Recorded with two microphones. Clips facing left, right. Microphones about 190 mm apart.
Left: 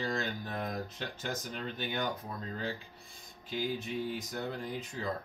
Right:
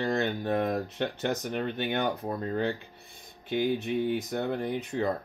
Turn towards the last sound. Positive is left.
turn(degrees=-65)  # may be behind; listen again after turning